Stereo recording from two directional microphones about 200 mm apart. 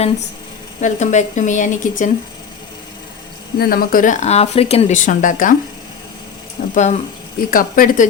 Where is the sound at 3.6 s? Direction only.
45° left (ahead or behind).